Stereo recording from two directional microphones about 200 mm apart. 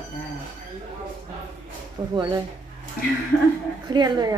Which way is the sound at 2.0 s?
20° right (ahead or behind).